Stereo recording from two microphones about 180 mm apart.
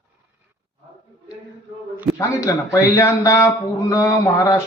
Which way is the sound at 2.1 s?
15° left (ahead or behind).